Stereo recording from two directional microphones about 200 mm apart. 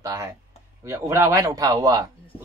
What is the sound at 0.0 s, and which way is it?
Speech, 20° right (ahead or behind).